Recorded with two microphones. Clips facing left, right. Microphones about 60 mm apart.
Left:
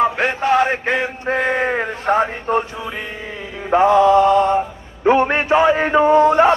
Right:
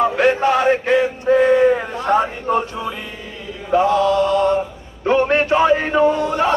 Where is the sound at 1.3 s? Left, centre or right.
Left.